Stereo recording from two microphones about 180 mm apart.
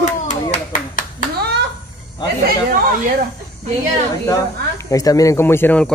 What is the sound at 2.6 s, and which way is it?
Speech, 55° right (ahead or behind).